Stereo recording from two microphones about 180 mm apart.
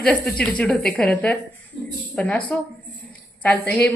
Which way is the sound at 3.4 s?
5° left (ahead or behind).